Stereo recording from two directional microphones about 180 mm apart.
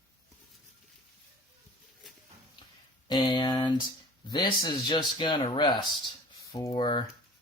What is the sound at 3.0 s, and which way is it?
Speech, 25° left (ahead or behind).